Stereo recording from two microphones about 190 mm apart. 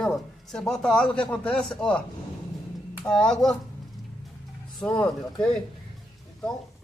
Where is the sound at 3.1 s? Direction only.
5° left (ahead or behind).